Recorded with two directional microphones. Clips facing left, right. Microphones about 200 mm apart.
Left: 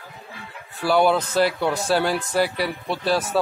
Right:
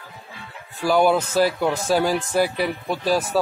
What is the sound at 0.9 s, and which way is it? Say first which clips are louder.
Speech: right 1 dB; 5° right (ahead or behind).